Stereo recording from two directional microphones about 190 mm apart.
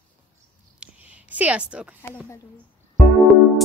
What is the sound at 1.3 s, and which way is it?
Speech, 5° right (ahead or behind).